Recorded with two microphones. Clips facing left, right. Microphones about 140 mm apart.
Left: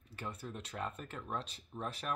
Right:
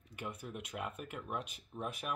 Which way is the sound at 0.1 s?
15° right (ahead or behind).